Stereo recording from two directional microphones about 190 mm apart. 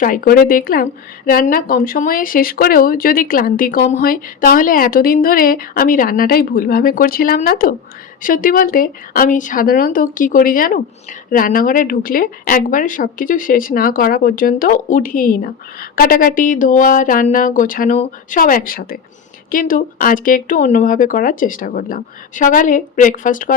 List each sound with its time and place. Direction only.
0.0 s a woman's voice: 50° left (ahead or behind)